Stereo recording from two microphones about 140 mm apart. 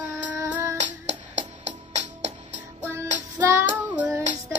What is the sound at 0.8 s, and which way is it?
Music, 55° right (ahead or behind).